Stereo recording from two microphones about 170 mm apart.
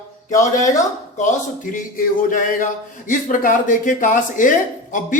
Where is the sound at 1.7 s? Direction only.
50° left (ahead or behind).